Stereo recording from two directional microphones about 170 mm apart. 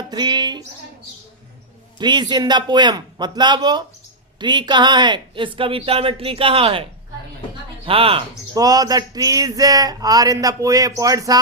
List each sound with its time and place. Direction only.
0.1 s speech: 25° right (ahead or behind)
2.0 s speech: 25° right (ahead or behind)
7.9 s speech: 35° right (ahead or behind)
8.5 s speech: 20° right (ahead or behind)